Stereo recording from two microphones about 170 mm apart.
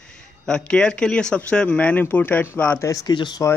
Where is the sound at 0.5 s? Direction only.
5° left (ahead or behind).